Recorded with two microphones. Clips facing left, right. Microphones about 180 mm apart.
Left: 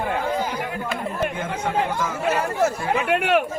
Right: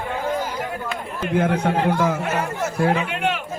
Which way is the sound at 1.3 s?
65° right (ahead or behind).